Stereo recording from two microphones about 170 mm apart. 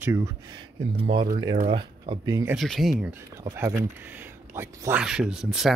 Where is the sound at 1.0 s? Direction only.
35° right (ahead or behind).